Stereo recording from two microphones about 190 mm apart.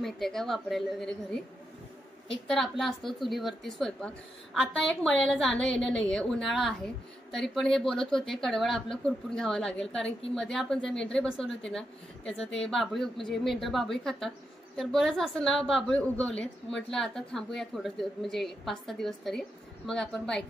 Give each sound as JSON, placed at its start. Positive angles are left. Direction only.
{"t": 0.0, "sound": "a woman's voice", "side_deg": 0}
{"t": 2.4, "sound": "a woman's voice", "side_deg": 0}
{"t": 12.6, "sound": "a woman's voice", "side_deg": 0}